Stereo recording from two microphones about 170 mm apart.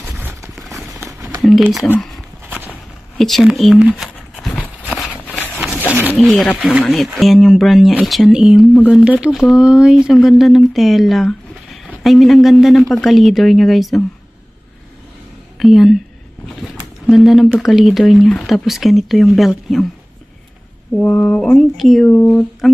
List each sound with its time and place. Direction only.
0.2 s clip-clop: 15° right (ahead or behind)
1.6 s speech: centre (ahead or behind)
1.9 s a sound: centre (ahead or behind)
2.4 s walk: 10° right (ahead or behind)
3.2 s a sound: centre (ahead or behind)
6.1 s speech: centre (ahead or behind)
15.6 s speech: centre (ahead or behind)
21.0 s speech: 10° left (ahead or behind)
22.1 s speech: 10° left (ahead or behind)